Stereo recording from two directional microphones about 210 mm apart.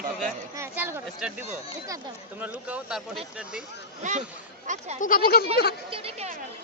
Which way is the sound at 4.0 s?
35° right (ahead or behind).